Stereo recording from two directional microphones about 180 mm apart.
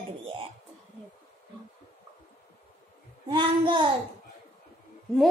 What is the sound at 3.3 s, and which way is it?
Speech, 25° right (ahead or behind).